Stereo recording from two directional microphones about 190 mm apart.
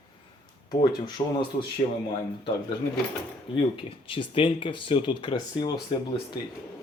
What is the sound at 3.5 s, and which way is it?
Speech, 30° left (ahead or behind).